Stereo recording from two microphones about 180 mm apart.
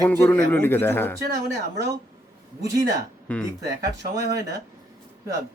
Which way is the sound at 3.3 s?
10° left (ahead or behind).